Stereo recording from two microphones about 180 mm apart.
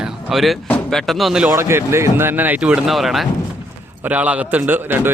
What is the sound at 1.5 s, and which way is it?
A man's voice, 15° right (ahead or behind).